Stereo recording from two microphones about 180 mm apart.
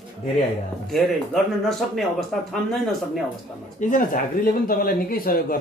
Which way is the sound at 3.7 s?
45° left (ahead or behind).